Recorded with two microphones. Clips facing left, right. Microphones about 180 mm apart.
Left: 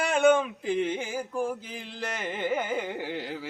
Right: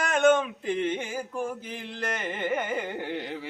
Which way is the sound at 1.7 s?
5° left (ahead or behind).